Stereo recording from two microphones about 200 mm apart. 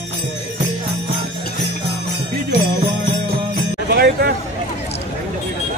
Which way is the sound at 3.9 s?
50° right (ahead or behind).